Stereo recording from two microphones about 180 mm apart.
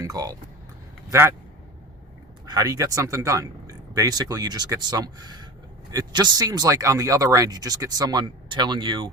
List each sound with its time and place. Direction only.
0.0 s speech: 20° right (ahead or behind)
2.5 s speech: 20° right (ahead or behind)